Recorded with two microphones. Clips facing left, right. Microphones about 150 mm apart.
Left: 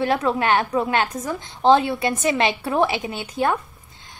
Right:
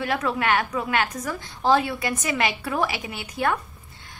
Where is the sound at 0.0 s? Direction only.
30° left (ahead or behind).